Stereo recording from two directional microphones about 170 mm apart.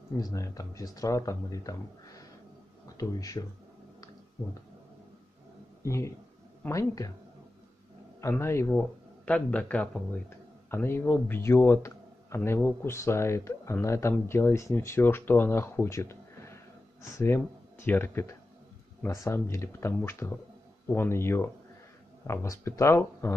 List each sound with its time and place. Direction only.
0.2 s speech: 20° left (ahead or behind)
5.9 s speech: 15° left (ahead or behind)
8.2 s speech: 15° left (ahead or behind)
17.8 s speech: 15° left (ahead or behind)